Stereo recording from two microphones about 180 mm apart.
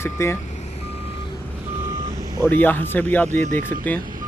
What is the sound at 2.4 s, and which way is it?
Speech, 10° left (ahead or behind).